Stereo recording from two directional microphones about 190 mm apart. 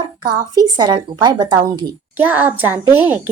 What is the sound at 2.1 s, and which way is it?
A child's voice, 10° right (ahead or behind).